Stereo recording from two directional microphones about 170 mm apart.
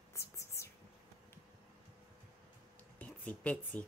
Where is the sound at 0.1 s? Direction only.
15° left (ahead or behind).